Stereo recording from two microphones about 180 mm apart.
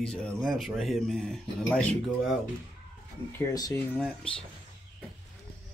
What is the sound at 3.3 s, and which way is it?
Speech, 20° left (ahead or behind).